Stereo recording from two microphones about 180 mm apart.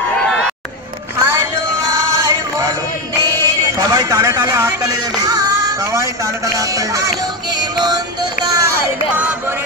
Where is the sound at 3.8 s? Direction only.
15° right (ahead or behind).